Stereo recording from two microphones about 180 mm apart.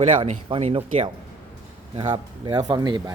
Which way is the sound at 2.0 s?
25° right (ahead or behind).